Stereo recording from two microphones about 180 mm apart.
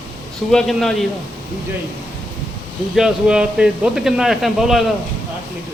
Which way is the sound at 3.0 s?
5° right (ahead or behind).